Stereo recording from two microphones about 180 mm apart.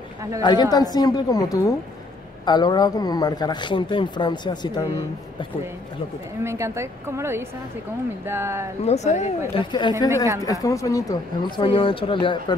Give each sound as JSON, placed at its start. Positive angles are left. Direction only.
{"t": 0.4, "sound": "speech", "side_deg": 25}
{"t": 6.4, "sound": "a woman's voice", "side_deg": -15}
{"t": 8.8, "sound": "speech", "side_deg": 40}
{"t": 9.5, "sound": "speech", "side_deg": 25}